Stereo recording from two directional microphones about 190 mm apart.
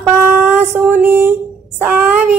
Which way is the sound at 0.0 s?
10° right (ahead or behind).